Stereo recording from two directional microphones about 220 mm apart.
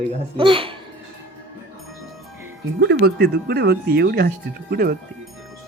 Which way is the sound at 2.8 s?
55° right (ahead or behind).